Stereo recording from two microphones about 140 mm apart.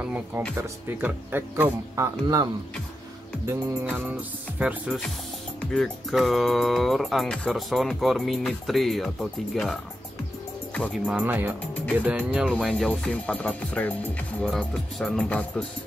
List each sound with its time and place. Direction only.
0.0 s speech: 10° right (ahead or behind)
2.0 s speech: 25° right (ahead or behind)
3.4 s speech: 10° right (ahead or behind)
5.6 s music: centre (ahead or behind)
11.0 s speech: 5° right (ahead or behind)
11.7 s speech: 10° left (ahead or behind)
12.0 s speech: 10° right (ahead or behind)
12.7 s speech: 5° left (ahead or behind)